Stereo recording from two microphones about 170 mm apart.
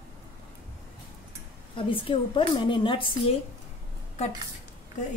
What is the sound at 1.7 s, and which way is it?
A woman's voice, 30° left (ahead or behind).